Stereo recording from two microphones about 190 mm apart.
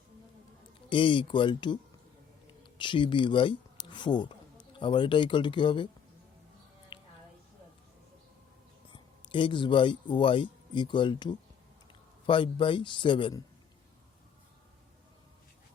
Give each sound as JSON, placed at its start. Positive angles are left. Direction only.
{"t": 0.9, "sound": "a man's voice", "side_deg": 25}
{"t": 6.9, "sound": "a sound", "side_deg": 25}
{"t": 8.9, "sound": "a man's voice", "side_deg": 25}